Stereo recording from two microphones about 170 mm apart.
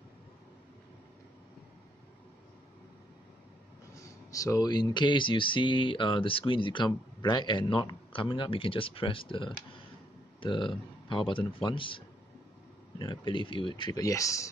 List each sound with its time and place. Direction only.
3.9 s speech: 20° left (ahead or behind)
13.0 s speech: 30° left (ahead or behind)